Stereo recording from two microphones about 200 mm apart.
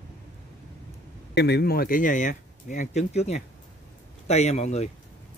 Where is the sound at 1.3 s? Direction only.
55° left (ahead or behind); by 4.9 s 35° left (ahead or behind).